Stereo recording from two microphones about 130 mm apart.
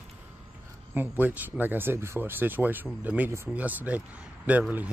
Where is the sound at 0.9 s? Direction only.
15° right (ahead or behind).